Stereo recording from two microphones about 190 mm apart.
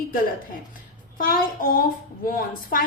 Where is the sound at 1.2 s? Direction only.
50° left (ahead or behind).